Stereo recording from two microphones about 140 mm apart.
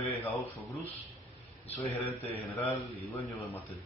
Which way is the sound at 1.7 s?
10° left (ahead or behind).